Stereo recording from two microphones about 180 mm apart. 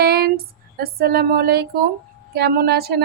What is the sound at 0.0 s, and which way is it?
Female singing, 60° right (ahead or behind).